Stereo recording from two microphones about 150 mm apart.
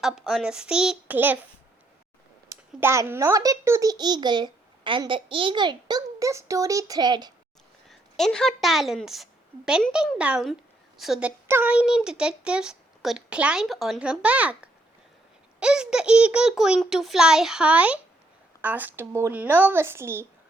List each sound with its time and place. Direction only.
0.0 s speech: centre (ahead or behind)
2.5 s a child's voice: 20° right (ahead or behind)
7.9 s a woman's voice: 5° left (ahead or behind); by 20.2 s 15° right (ahead or behind)